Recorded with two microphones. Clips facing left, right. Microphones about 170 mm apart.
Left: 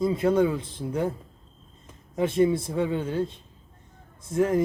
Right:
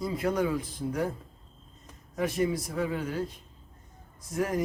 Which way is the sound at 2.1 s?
25° left (ahead or behind).